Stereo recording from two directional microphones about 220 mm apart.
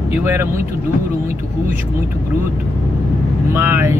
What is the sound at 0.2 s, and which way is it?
Speech, 10° right (ahead or behind).